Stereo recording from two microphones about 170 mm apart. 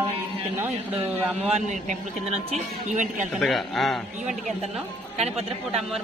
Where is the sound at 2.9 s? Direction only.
50° right (ahead or behind).